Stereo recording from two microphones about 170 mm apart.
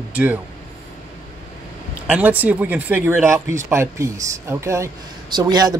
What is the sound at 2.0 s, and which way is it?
Speech, 10° right (ahead or behind).